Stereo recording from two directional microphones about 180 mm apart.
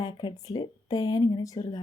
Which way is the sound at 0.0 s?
25° left (ahead or behind).